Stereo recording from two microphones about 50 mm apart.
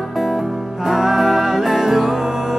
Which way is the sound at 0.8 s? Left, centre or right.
Centre.